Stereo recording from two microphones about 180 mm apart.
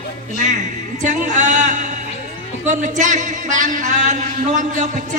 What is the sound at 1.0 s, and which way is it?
Speech, 45° right (ahead or behind).